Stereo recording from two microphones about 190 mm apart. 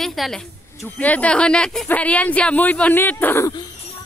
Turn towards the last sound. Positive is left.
turn(degrees=15)  # may be behind; listen again after turning